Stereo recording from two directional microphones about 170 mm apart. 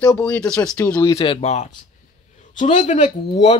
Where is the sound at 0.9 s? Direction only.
25° left (ahead or behind).